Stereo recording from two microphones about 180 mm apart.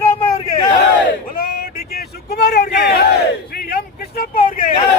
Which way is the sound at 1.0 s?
60° left (ahead or behind).